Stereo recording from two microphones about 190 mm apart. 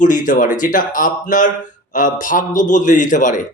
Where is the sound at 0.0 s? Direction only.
45° left (ahead or behind).